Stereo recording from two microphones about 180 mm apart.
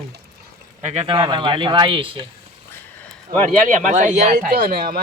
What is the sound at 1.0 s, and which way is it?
Speech, 30° right (ahead or behind).